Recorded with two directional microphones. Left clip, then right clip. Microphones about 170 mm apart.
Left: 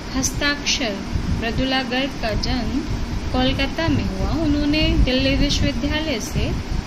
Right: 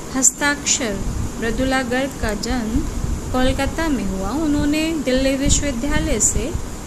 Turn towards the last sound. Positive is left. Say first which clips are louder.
# right 1 dB
turn(degrees=-50)  # may be behind; listen again after turning